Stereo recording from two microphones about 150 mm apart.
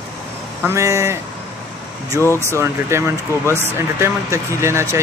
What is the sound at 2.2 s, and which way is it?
Speech, 15° left (ahead or behind).